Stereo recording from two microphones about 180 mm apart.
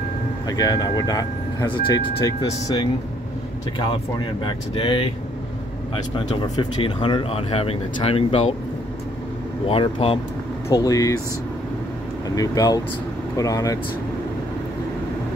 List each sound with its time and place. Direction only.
0.5 s speech: 20° left (ahead or behind)
6.1 s speech: 30° left (ahead or behind)
9.7 s speech: 30° left (ahead or behind)
10.7 s speech: 20° left (ahead or behind)
12.4 s speech: 20° left (ahead or behind)